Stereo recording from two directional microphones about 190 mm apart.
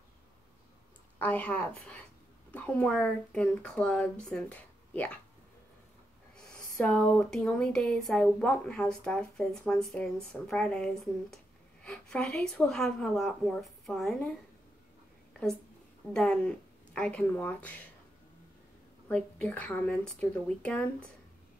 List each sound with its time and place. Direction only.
1.2 s speech: 10° left (ahead or behind)
6.3 s speech: 5° left (ahead or behind)
16.1 s speech: 5° left (ahead or behind)
19.0 s speech: 5° left (ahead or behind)